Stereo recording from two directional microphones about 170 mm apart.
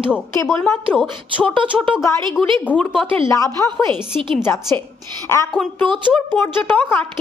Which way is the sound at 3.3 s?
20° left (ahead or behind).